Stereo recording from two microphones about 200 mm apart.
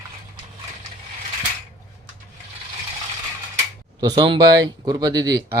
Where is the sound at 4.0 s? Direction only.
20° right (ahead or behind).